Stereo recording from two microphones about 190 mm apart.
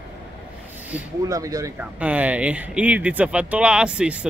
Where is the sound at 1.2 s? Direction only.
20° right (ahead or behind).